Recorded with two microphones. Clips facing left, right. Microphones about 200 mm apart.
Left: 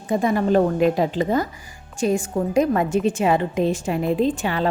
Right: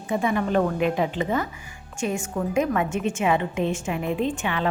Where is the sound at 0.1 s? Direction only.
40° left (ahead or behind).